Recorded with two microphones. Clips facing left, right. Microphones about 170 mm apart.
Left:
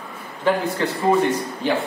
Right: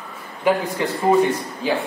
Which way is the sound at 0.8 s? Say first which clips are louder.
Even; 15° right (ahead or behind).